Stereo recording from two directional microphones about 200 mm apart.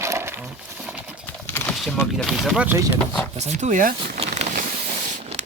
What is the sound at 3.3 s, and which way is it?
Speech, 35° right (ahead or behind).